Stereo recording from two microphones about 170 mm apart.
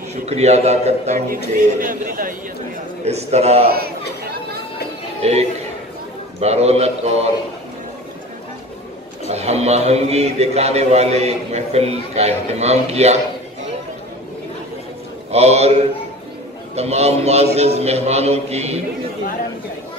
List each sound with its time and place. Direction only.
0.1 s a man's voice: 40° right (ahead or behind)
1.3 s a man's voice: 55° right (ahead or behind)
3.1 s a man's voice: 40° right (ahead or behind)
3.6 s speech: 65° right (ahead or behind)
5.2 s a man's voice: 40° right (ahead or behind)
9.3 s a man's voice: 40° right (ahead or behind)
15.3 s a man's voice: 40° right (ahead or behind)